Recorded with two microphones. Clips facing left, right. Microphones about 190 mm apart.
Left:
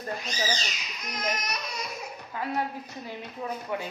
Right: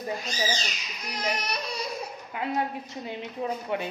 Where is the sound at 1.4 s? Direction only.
30° right (ahead or behind).